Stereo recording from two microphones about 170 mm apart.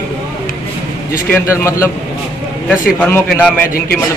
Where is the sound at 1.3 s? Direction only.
15° left (ahead or behind).